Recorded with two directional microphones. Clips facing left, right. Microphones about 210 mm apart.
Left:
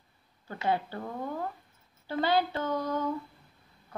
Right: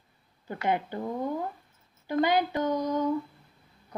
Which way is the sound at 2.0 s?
15° right (ahead or behind).